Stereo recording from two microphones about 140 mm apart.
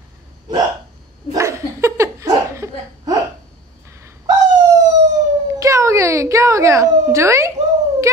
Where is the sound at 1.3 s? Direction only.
20° right (ahead or behind).